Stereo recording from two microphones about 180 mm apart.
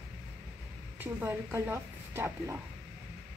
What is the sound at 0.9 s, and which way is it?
Speech, 15° right (ahead or behind).